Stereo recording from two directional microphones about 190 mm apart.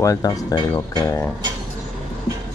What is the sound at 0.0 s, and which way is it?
Speech, 15° left (ahead or behind).